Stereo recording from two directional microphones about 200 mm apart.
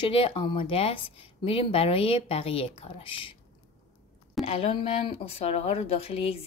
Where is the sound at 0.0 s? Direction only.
25° left (ahead or behind).